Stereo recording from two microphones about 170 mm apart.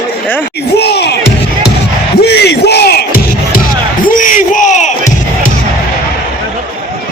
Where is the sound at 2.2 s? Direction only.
75° left (ahead or behind).